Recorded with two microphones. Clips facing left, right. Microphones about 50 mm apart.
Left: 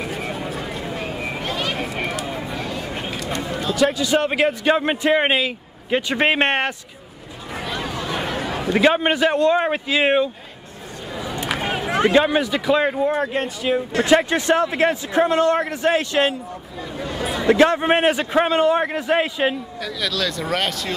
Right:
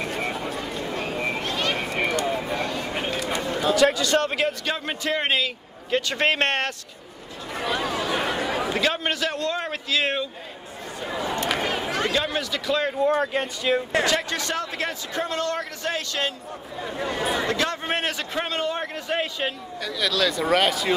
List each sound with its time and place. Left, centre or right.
0.0 s a sound: centre
3.7 s a man's voice: centre
7.5 s a sound: centre
8.7 s a man's voice: left
11.3 s run: centre
11.9 s a man's voice: left; by 13.7 s centre
14.0 s a man's voice: left
16.9 s speech: centre
17.5 s a man's voice: left
19.8 s speech: centre